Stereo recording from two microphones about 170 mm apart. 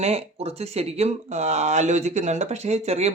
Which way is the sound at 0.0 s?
40° right (ahead or behind).